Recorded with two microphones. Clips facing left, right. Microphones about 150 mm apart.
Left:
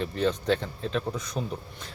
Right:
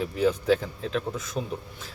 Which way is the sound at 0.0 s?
5° right (ahead or behind).